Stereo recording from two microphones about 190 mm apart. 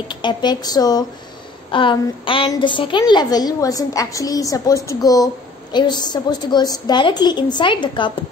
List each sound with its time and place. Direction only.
0.1 s a woman's voice: 25° left (ahead or behind)